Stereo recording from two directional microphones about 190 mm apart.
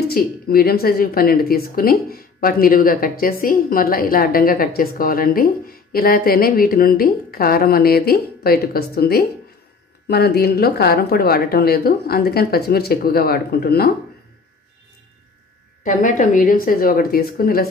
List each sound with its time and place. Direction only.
0.1 s a woman's voice: 55° left (ahead or behind)
15.8 s speech: 40° left (ahead or behind)